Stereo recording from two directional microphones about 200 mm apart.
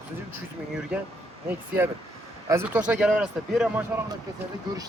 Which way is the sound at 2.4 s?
10° right (ahead or behind).